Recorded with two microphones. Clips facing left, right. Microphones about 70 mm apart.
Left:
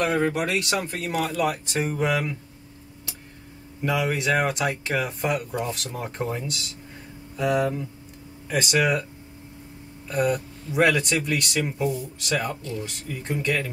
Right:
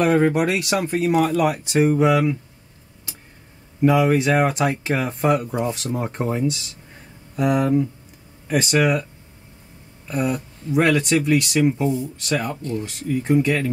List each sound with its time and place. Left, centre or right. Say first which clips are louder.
0.0 s speech: right 6 dB; centre
0.3 s speech: right 5 dB; centre
4.1 s speech: right 5 dB; centre
5.5 s speech: right 5 dB; centre
7.3 s speech: right 5 dB; centre
10.0 s speech: even; centre
11.8 s speech: right 4 dB; right
12.2 s speech: right 3 dB; centre